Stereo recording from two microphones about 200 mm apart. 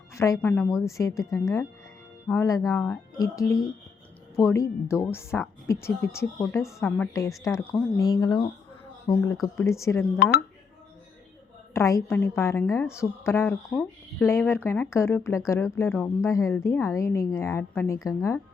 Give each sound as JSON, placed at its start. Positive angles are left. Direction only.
{"t": 0.1, "sound": "a woman's voice", "side_deg": 15}
{"t": 11.7, "sound": "a woman's voice", "side_deg": 15}